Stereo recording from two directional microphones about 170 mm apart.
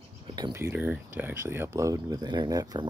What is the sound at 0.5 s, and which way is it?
Speech, 15° right (ahead or behind).